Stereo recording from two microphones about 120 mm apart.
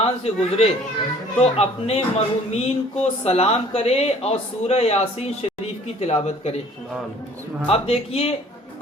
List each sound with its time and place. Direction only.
0.0 s speech: 55° left (ahead or behind)
7.7 s speech: 55° left (ahead or behind)